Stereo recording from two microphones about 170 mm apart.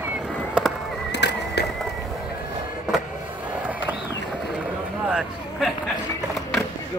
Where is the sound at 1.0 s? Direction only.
85° left.